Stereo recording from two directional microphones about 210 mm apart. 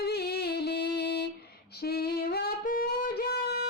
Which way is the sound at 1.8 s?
50° left (ahead or behind).